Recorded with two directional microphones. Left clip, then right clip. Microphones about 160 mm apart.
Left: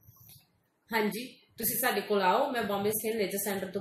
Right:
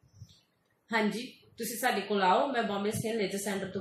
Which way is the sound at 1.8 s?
20° left (ahead or behind).